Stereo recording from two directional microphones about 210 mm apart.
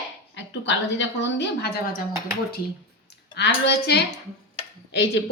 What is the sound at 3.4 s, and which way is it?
A woman's voice, 55° left (ahead or behind).